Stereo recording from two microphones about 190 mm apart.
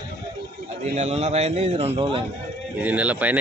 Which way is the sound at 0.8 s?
35° right (ahead or behind).